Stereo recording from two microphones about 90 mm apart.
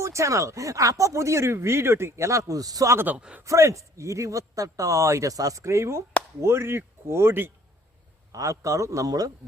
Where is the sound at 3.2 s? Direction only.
10° right (ahead or behind).